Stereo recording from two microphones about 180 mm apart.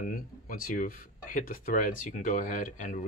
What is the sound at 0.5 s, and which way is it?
Speech, 50° left (ahead or behind).